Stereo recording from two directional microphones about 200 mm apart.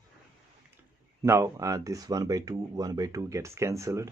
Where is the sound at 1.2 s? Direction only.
15° right (ahead or behind).